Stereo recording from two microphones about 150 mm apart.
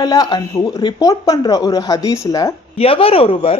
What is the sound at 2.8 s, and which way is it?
Speech, 40° left (ahead or behind).